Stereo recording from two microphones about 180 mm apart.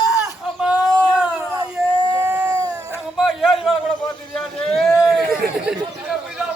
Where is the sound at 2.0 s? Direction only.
20° right (ahead or behind).